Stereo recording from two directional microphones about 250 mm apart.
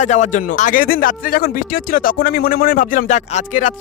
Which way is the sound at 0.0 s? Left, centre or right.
Left.